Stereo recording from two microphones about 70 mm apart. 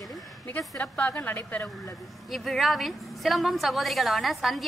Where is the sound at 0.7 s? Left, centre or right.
Left.